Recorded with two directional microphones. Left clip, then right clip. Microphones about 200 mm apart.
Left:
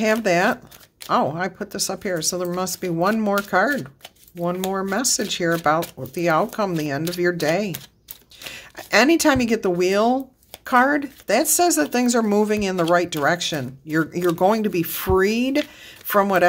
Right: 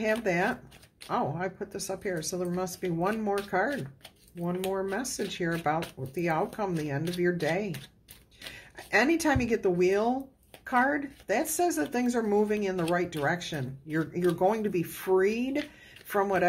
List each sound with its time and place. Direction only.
0.0 s speech: 40° left (ahead or behind)